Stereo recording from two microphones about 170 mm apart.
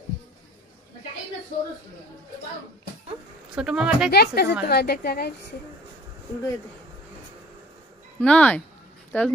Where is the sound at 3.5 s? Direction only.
5° right (ahead or behind).